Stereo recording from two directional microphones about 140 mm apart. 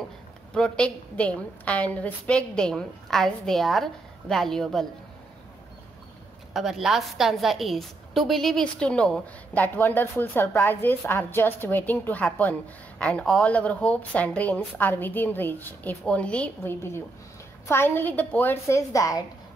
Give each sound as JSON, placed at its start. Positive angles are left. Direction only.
{"t": 0.6, "sound": "a woman's voice", "side_deg": 5}
{"t": 6.5, "sound": "a woman's voice", "side_deg": 0}